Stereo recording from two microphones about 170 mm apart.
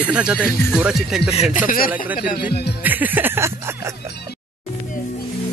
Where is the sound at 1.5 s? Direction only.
55° left (ahead or behind).